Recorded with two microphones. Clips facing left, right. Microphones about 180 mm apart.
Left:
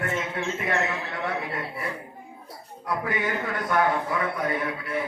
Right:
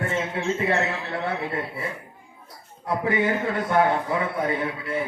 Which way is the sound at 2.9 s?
25° right (ahead or behind).